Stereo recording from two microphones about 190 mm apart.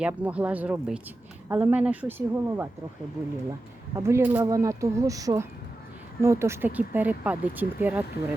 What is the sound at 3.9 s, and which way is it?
Speech, 15° right (ahead or behind).